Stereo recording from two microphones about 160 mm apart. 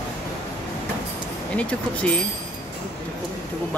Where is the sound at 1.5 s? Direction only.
10° left (ahead or behind).